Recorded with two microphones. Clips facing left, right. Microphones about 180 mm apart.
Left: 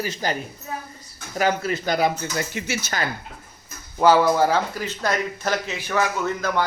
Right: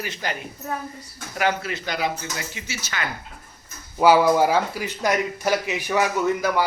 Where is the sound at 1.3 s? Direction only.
40° left (ahead or behind); by 2.9 s 55° left (ahead or behind).